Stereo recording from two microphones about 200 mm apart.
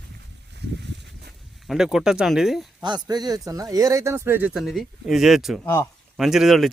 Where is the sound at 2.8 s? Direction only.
20° right (ahead or behind).